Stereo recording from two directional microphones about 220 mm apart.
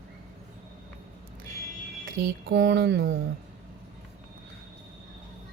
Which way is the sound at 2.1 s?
60° right (ahead or behind).